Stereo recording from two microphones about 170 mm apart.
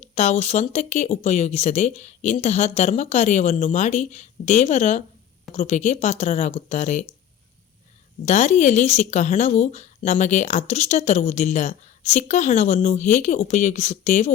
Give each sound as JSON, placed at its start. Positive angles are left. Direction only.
{"t": 0.0, "sound": "speech", "side_deg": 40}
{"t": 8.2, "sound": "speech", "side_deg": 40}